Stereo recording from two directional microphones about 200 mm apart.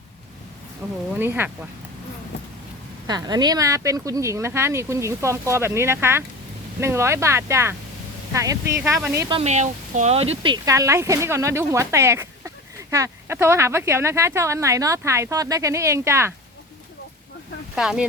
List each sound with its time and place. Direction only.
1.2 s speech: 10° right (ahead or behind)
3.1 s speech: 20° right (ahead or behind)
9.3 s speech: 35° right (ahead or behind); by 16.3 s 15° right (ahead or behind)
17.7 s speech: 5° right (ahead or behind)